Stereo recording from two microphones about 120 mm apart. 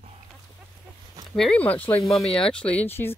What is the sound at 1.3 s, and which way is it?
Speech, 5° left (ahead or behind).